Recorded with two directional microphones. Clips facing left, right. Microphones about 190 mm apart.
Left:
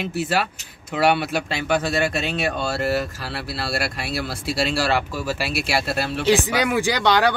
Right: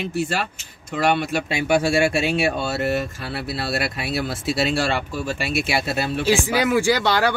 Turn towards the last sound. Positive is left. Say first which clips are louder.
# right 1 dB
turn(degrees=20)  # may be behind; listen again after turning